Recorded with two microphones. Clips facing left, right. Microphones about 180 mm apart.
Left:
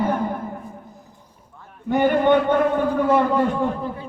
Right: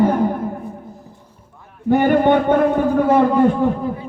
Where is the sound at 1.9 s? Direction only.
50° right (ahead or behind).